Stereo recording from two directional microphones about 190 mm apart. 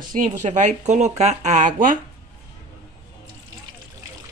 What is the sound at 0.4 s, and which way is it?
Speech, 40° right (ahead or behind).